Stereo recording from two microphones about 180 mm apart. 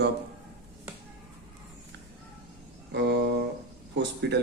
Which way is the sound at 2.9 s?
75° right (ahead or behind).